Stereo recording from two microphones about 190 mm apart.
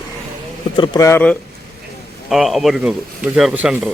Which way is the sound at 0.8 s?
15° left (ahead or behind).